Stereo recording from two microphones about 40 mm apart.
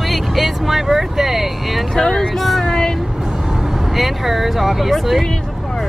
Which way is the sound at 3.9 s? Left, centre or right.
Centre.